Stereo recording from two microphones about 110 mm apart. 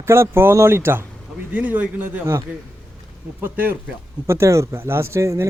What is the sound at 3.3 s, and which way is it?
A man's voice, 15° right (ahead or behind).